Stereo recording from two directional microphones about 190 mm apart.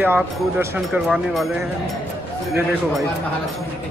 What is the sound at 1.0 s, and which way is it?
Speech, centre (ahead or behind).